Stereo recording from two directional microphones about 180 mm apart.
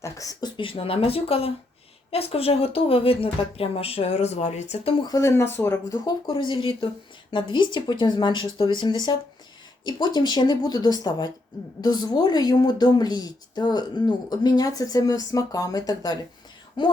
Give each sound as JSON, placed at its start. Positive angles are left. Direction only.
{"t": 0.0, "sound": "speech", "side_deg": 20}
{"t": 5.1, "sound": "speech", "side_deg": 15}
{"t": 6.2, "sound": "a woman's voice", "side_deg": 30}